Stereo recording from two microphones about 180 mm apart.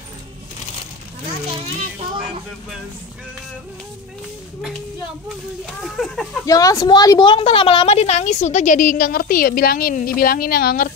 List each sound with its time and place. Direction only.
5.8 s speech: centre (ahead or behind)
6.4 s a woman's voice: 20° left (ahead or behind); by 10.9 s 55° left (ahead or behind)